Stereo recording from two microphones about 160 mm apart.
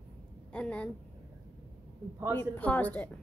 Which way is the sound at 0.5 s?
5° left (ahead or behind).